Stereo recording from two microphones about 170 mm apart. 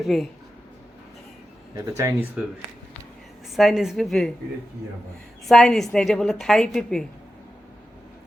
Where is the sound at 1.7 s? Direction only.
15° right (ahead or behind).